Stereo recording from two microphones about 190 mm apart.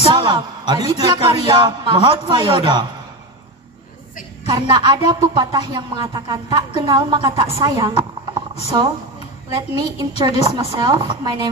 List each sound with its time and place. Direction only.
0.1 s a man's voice: 25° right (ahead or behind)
4.5 s speech: 25° right (ahead or behind)
9.9 s speech: 20° right (ahead or behind)